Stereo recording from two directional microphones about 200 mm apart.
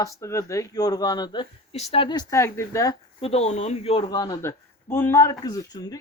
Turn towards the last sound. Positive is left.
turn(degrees=15)  # may be behind; listen again after turning